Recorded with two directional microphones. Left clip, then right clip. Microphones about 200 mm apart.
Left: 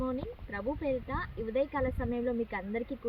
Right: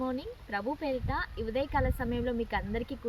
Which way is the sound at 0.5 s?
15° right (ahead or behind).